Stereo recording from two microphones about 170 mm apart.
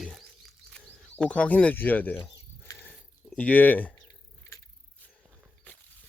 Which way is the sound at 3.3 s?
10° left (ahead or behind).